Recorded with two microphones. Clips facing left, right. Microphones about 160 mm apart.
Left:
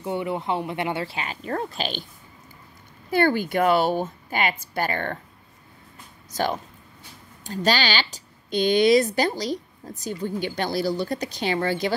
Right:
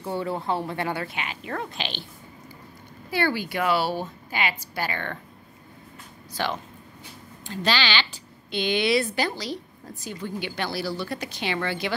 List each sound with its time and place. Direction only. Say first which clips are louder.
0.0 s speech: left 2 dB; 20° left (ahead or behind); by 2.0 s 45° left (ahead or behind)
3.1 s a woman's voice: left 5 dB; 50° left (ahead or behind)
6.3 s a woman's voice: left 3 dB; 45° left (ahead or behind)